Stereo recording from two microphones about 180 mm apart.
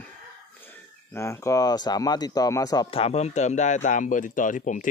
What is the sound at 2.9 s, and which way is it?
Speech, 35° left (ahead or behind).